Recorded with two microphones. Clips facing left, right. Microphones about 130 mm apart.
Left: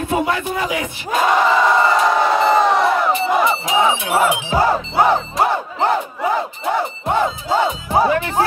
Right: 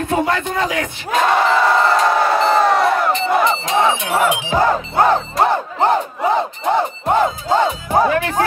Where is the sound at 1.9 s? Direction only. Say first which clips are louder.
Even; 10° left (ahead or behind).